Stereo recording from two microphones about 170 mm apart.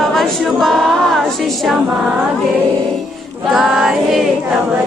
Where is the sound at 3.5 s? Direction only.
Centre (ahead or behind).